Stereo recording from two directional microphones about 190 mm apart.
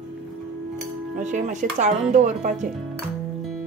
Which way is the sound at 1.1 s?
40° right (ahead or behind).